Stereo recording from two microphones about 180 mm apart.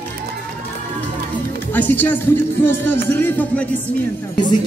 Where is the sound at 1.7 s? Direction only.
10° left (ahead or behind).